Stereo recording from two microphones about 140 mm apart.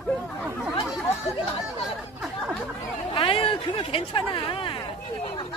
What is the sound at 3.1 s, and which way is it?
Speech, 40° left (ahead or behind).